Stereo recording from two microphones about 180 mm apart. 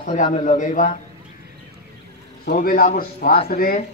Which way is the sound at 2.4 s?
55° left (ahead or behind).